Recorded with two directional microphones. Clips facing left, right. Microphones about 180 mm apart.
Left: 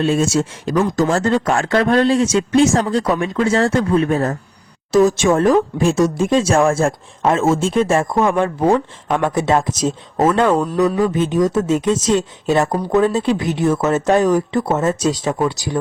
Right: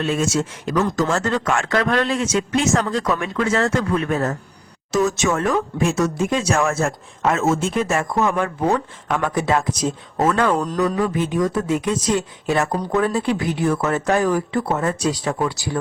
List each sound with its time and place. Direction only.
0.0 s speech: 30° left (ahead or behind)
10.6 s speech: 10° left (ahead or behind)
11.0 s speech: 25° left (ahead or behind)